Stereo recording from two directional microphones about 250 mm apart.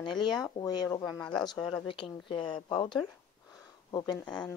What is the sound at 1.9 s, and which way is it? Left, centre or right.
Speech, centre.